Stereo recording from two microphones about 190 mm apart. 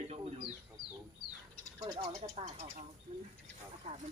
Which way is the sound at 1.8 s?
25° right (ahead or behind).